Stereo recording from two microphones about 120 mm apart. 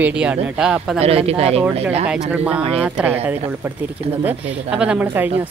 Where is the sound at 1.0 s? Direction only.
55° right (ahead or behind).